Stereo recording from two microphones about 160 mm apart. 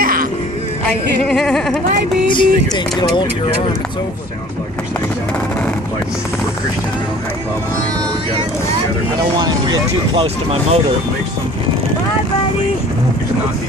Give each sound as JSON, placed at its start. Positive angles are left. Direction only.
{"t": 0.0, "sound": "music", "side_deg": -65}
{"t": 1.2, "sound": "a sound", "side_deg": 5}
{"t": 2.3, "sound": "speech", "side_deg": 30}
{"t": 9.4, "sound": "speech", "side_deg": -25}
{"t": 10.2, "sound": "speech", "side_deg": -40}